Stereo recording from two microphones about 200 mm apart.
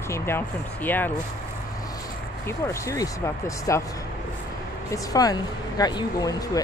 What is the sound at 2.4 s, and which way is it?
Speech, 15° left (ahead or behind).